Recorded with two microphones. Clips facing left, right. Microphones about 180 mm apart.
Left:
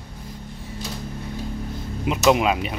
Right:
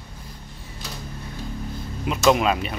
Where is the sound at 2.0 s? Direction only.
15° left (ahead or behind).